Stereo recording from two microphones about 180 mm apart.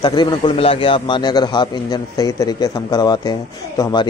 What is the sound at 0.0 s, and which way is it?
A man's voice, 25° left (ahead or behind).